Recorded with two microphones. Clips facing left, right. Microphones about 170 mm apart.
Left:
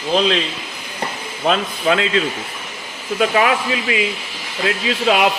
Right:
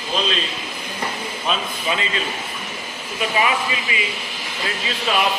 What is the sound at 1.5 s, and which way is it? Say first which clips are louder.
Speech: left 7 dB; 75° left (ahead or behind).